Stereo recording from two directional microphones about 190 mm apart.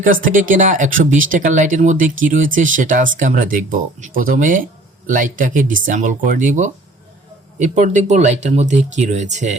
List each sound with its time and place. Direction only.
0.0 s speech: 45° right (ahead or behind)